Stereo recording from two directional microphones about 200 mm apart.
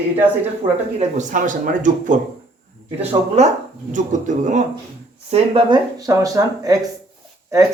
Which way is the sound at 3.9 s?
40° right (ahead or behind).